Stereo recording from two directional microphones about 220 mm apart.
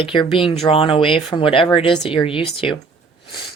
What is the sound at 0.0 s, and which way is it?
A woman's voice, 25° left (ahead or behind).